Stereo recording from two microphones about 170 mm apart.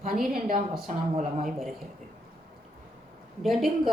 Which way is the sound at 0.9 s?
40° right (ahead or behind).